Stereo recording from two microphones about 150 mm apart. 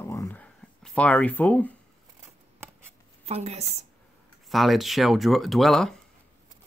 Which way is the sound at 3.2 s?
45° right (ahead or behind).